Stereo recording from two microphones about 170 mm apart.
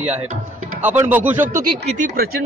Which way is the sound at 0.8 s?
10° right (ahead or behind).